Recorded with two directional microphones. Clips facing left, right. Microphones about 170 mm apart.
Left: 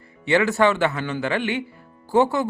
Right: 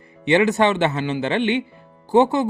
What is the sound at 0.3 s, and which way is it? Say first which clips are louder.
Speech: right 2 dB; 20° right (ahead or behind).